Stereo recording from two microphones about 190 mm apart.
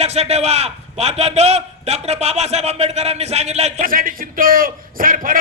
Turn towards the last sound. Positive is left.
turn(degrees=-45)  # may be behind; listen again after turning